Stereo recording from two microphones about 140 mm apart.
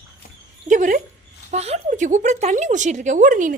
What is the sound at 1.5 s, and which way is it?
Speech, 50° right (ahead or behind).